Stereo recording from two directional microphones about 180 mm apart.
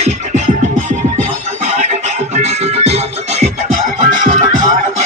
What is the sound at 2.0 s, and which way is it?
Music, 40° right (ahead or behind).